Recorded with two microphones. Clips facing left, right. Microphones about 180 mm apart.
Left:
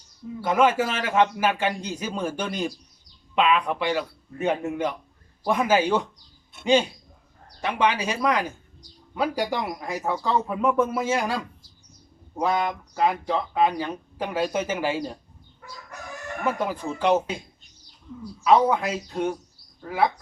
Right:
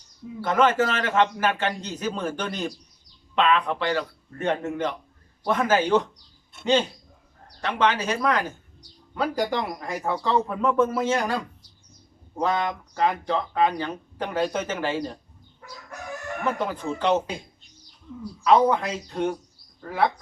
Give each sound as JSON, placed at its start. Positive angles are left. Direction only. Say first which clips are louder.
{"t": 0.4, "sound": "speech", "louder": "even", "side_deg": 10}
{"t": 7.6, "sound": "speech", "louder": "even", "side_deg": 10}
{"t": 16.4, "sound": "speech", "louder": "left 1 dB", "side_deg": 10}
{"t": 18.4, "sound": "speech", "louder": "even", "side_deg": 5}